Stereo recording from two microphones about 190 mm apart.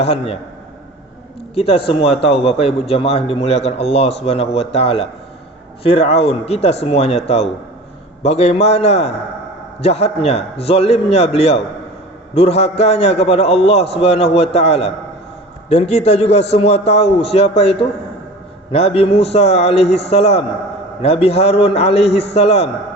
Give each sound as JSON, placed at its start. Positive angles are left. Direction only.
{"t": 0.0, "sound": "a man's voice", "side_deg": 30}
{"t": 1.5, "sound": "a man's voice", "side_deg": 30}
{"t": 8.2, "sound": "a man's voice", "side_deg": 35}